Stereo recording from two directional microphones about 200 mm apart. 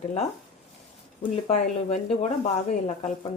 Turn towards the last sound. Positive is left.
turn(degrees=35)  # may be behind; listen again after turning